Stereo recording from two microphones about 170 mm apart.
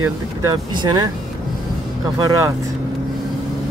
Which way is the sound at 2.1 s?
20° right (ahead or behind).